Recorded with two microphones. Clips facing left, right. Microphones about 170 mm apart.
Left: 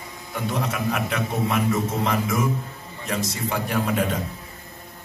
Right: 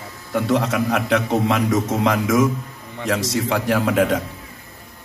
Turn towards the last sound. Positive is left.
turn(degrees=-80)